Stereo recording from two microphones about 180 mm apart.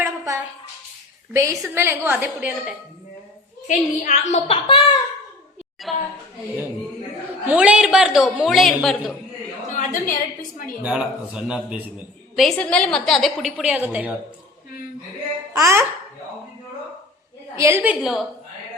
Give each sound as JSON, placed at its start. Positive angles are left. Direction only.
{"t": 0.0, "sound": "a sound", "side_deg": -15}
{"t": 1.3, "sound": "a woman's voice", "side_deg": -15}
{"t": 3.7, "sound": "a woman's voice", "side_deg": 45}
{"t": 5.9, "sound": "a woman's voice", "side_deg": 0}
{"t": 7.4, "sound": "a woman's voice", "side_deg": -5}
{"t": 9.6, "sound": "a sound", "side_deg": 45}
{"t": 10.8, "sound": "a woman's voice", "side_deg": -5}
{"t": 15.5, "sound": "a woman's voice", "side_deg": -15}
{"t": 17.6, "sound": "a woman's voice", "side_deg": -15}